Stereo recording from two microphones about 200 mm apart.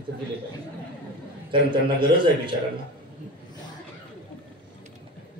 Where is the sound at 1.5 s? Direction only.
25° right (ahead or behind).